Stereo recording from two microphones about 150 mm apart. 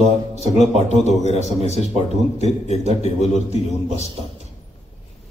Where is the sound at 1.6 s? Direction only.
45° left (ahead or behind).